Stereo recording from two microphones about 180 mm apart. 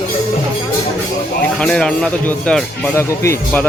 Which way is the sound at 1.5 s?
5° left (ahead or behind).